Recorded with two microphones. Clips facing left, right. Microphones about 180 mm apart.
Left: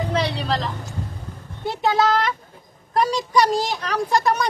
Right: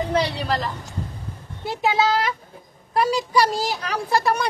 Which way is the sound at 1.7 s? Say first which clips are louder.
Left 1 dB; 10° right (ahead or behind).